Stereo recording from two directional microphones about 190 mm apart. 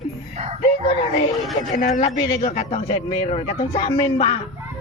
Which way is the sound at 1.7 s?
40° left (ahead or behind).